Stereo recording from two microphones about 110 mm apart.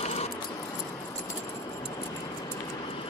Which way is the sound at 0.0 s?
80° left.